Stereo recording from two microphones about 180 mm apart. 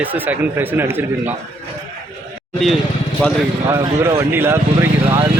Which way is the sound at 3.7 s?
15° right (ahead or behind).